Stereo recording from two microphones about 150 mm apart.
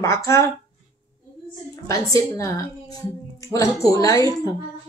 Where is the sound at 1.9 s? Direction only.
20° left (ahead or behind).